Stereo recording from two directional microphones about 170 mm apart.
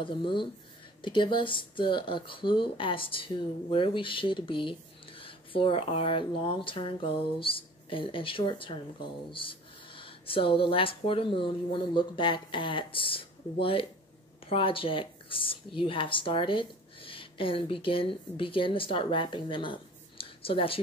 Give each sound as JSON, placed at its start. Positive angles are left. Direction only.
{"t": 0.0, "sound": "speech", "side_deg": 30}